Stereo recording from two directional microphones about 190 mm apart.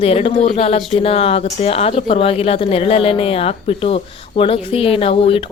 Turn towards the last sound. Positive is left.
turn(degrees=30)  # may be behind; listen again after turning